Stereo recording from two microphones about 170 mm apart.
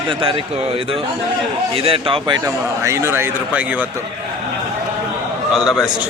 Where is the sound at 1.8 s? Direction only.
35° right (ahead or behind).